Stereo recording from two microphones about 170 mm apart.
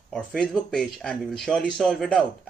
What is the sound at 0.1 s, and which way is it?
Speech, 5° left (ahead or behind).